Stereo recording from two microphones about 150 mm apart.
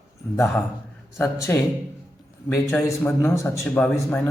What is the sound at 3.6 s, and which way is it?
Speech, 5° left (ahead or behind).